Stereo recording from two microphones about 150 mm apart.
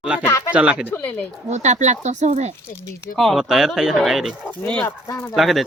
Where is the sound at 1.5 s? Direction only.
50° right (ahead or behind).